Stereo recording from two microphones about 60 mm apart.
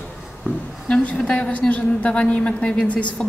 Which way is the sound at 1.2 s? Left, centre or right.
Centre.